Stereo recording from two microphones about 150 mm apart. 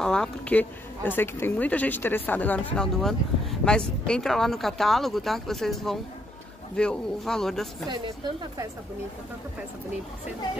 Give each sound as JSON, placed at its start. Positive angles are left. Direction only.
{"t": 0.0, "sound": "speech", "side_deg": 5}
{"t": 7.9, "sound": "speech", "side_deg": -30}